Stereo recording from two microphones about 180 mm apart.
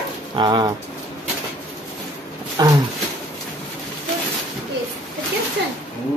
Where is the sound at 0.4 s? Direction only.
20° right (ahead or behind).